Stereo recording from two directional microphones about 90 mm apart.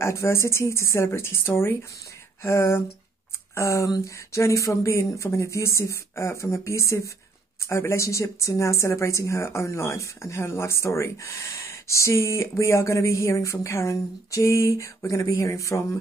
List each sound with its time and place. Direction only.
0.0 s speech: 30° left (ahead or behind)